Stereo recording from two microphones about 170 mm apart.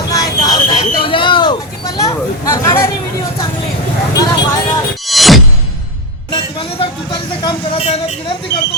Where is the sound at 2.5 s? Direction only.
15° left (ahead or behind).